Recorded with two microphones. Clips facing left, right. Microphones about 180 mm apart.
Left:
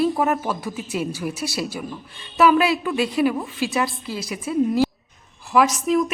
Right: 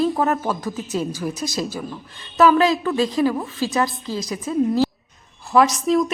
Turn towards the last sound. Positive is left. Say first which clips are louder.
# right 1 dB
turn(degrees=-35)  # may be behind; listen again after turning